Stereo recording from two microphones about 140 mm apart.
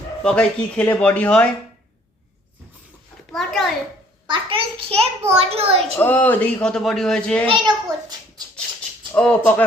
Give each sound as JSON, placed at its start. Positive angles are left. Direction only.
{"t": 0.2, "sound": "a man's voice", "side_deg": 5}
{"t": 3.3, "sound": "a child's voice", "side_deg": 0}
{"t": 4.3, "sound": "a child's voice", "side_deg": -40}
{"t": 6.0, "sound": "a man's voice", "side_deg": 10}
{"t": 7.4, "sound": "a child's voice", "side_deg": -35}
{"t": 9.1, "sound": "a man's voice", "side_deg": 10}